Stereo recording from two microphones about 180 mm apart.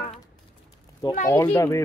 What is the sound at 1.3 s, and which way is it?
Speech, 15° left (ahead or behind).